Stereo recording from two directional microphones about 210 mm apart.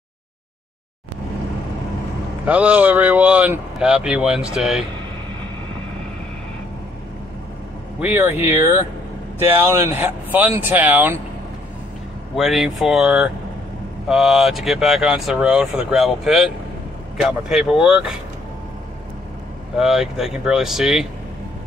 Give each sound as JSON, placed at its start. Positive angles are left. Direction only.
{"t": 2.4, "sound": "speech", "side_deg": -5}
{"t": 8.0, "sound": "speech", "side_deg": -10}
{"t": 12.4, "sound": "speech", "side_deg": 0}
{"t": 19.8, "sound": "speech", "side_deg": 0}